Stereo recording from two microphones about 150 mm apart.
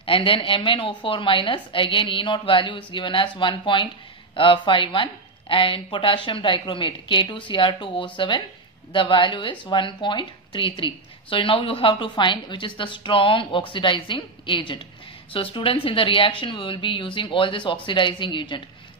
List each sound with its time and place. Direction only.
0.0 s a woman's voice: 35° left (ahead or behind)